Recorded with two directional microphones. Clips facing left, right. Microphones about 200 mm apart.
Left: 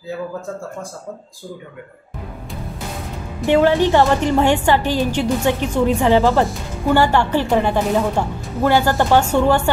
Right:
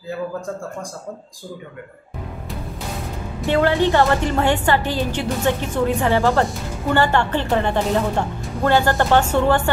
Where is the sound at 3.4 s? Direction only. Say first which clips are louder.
Left 3 dB; 15° left (ahead or behind).